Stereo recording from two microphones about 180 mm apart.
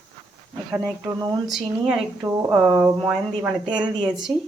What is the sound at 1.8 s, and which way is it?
A woman's voice, 5° right (ahead or behind).